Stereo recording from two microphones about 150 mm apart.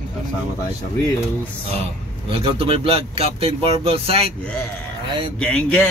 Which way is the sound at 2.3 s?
40° right (ahead or behind).